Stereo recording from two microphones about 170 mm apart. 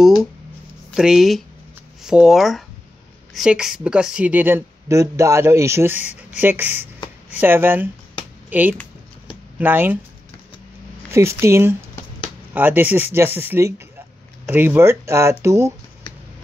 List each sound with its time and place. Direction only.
0.9 s speech: 5° right (ahead or behind)
11.1 s speech: 15° right (ahead or behind)